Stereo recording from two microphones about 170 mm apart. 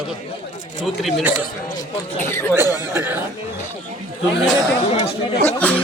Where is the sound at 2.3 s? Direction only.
15° left (ahead or behind).